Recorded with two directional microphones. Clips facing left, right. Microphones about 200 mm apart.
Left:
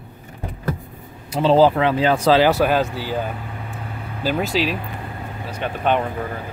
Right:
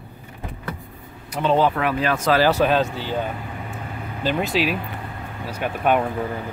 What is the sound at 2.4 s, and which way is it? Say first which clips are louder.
Speech: left 1 dB; 10° left (ahead or behind).